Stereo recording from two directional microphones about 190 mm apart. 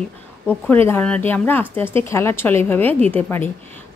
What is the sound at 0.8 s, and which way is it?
Speech, 10° left (ahead or behind).